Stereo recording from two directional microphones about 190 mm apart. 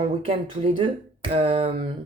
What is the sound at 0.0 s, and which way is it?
Speech, 35° right (ahead or behind).